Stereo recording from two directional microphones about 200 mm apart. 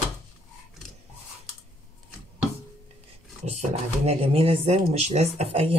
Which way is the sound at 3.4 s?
30° right (ahead or behind).